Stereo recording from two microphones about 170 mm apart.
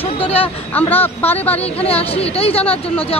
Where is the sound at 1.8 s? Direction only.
35° left (ahead or behind).